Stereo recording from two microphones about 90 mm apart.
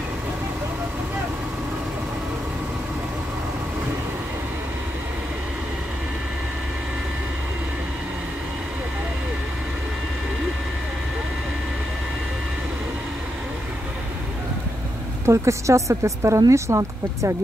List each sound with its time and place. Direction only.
15.2 s a woman's voice: 35° right (ahead or behind)